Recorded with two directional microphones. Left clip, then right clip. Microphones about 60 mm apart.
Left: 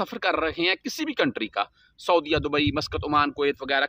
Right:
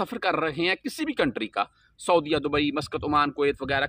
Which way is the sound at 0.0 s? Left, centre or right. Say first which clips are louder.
Left 1 dB; left.